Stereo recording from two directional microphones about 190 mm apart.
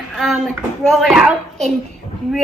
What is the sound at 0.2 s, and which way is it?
Speech, centre (ahead or behind).